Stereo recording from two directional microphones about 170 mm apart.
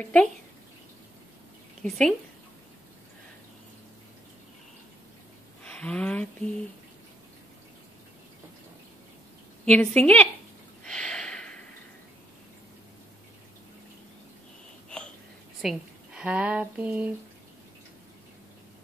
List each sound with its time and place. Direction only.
0.0 s a woman's voice: 5° left (ahead or behind)
1.8 s a woman's voice: centre (ahead or behind)
5.6 s speech: 5° left (ahead or behind)
9.7 s a woman's voice: 10° left (ahead or behind)
10.8 s a sound: 5° left (ahead or behind)
15.6 s speech: 5° right (ahead or behind)